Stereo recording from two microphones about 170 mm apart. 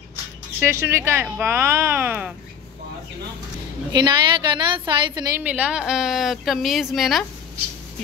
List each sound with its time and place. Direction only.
0.6 s speech: 15° right (ahead or behind)
3.9 s a woman's voice: 25° right (ahead or behind)
5.4 s a woman's voice: 10° right (ahead or behind)